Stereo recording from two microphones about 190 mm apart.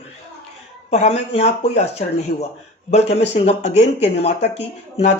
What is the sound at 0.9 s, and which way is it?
Speech, 35° left (ahead or behind).